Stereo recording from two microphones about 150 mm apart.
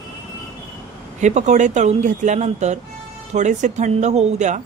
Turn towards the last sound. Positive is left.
turn(degrees=-50)  # may be behind; listen again after turning